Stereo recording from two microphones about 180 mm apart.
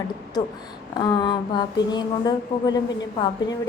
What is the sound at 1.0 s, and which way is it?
A woman's voice, 25° left (ahead or behind).